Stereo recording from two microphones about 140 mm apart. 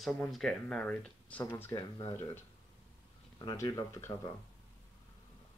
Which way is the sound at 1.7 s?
30° left (ahead or behind).